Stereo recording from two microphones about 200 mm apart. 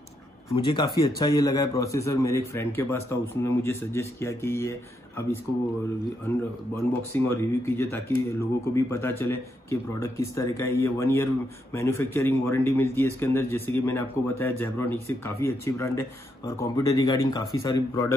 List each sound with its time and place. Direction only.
0.6 s a man's voice: 25° left (ahead or behind)
7.1 s a man's voice: 15° left (ahead or behind)